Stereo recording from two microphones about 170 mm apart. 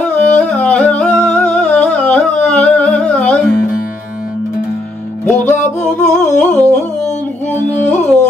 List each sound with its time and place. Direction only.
0.0 s humming: 5° left (ahead or behind)
5.2 s music: 10° left (ahead or behind)
6.0 s humming: 45° left (ahead or behind)
7.5 s music: 10° left (ahead or behind)